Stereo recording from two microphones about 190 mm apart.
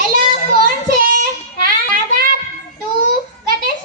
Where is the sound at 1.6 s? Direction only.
50° right (ahead or behind).